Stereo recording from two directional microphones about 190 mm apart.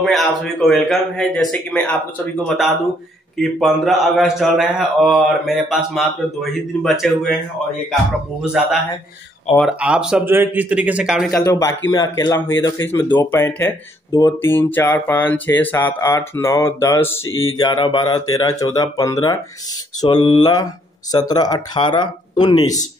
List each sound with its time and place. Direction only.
0.0 s a man's voice: centre (ahead or behind)
8.6 s a man's voice: centre (ahead or behind)
11.4 s speech: 20° left (ahead or behind)